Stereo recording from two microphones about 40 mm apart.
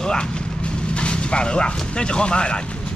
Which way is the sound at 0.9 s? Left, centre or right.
Left.